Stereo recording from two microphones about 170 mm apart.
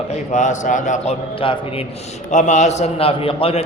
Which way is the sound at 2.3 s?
45° left (ahead or behind).